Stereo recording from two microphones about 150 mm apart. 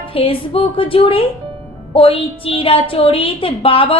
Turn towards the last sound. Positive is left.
turn(degrees=40)  # may be behind; listen again after turning